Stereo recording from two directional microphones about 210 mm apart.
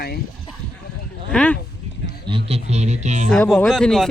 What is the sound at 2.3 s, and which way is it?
Speech, 25° right (ahead or behind).